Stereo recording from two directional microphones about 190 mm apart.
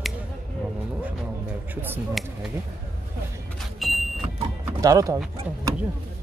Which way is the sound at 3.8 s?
Centre (ahead or behind).